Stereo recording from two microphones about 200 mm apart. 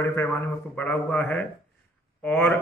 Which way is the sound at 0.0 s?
10° left (ahead or behind).